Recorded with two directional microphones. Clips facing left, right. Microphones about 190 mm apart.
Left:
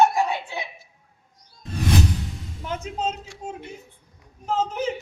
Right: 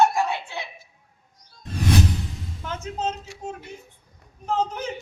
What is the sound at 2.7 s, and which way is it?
Music, 10° left (ahead or behind).